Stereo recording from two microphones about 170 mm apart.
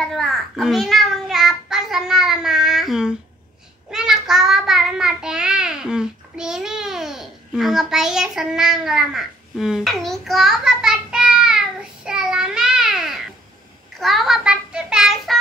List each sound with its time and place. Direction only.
0.1 s a child's voice: centre (ahead or behind)
3.9 s child singing: 5° right (ahead or behind)
13.9 s a child's voice: centre (ahead or behind)